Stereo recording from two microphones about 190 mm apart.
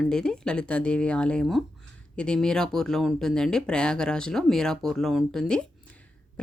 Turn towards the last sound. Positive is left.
turn(degrees=5)  # may be behind; listen again after turning